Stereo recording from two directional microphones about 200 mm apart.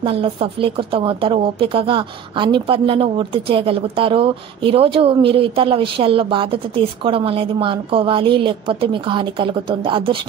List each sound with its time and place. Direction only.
0.0 s a woman's voice: 25° right (ahead or behind)